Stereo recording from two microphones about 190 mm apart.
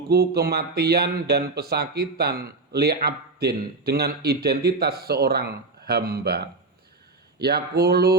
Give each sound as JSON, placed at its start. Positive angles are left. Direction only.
{"t": 0.1, "sound": "speech", "side_deg": -55}